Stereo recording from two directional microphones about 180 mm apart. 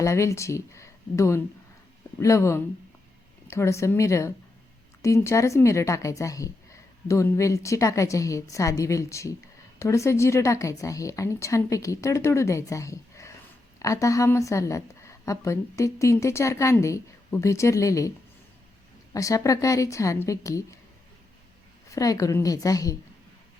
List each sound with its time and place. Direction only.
0.0 s a woman's voice: 15° left (ahead or behind)
19.1 s a woman's voice: 20° left (ahead or behind)
21.8 s a woman's voice: 20° left (ahead or behind)